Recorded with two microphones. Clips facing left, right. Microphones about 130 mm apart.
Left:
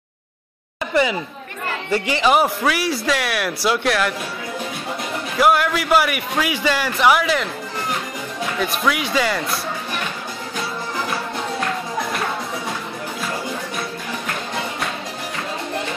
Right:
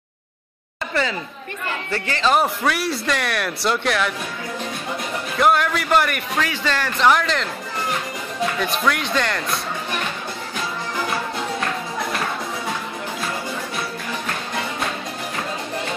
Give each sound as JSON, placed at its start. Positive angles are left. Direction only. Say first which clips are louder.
{"t": 0.9, "sound": "a man's voice", "louder": "left 5 dB", "side_deg": 15}
{"t": 5.4, "sound": "a man's voice", "louder": "left 1 dB", "side_deg": 5}
{"t": 8.5, "sound": "speech", "louder": "left 3 dB", "side_deg": 5}